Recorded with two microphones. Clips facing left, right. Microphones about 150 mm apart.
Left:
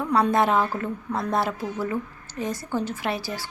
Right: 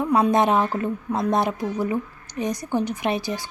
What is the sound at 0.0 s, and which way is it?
A woman's voice, 20° right (ahead or behind).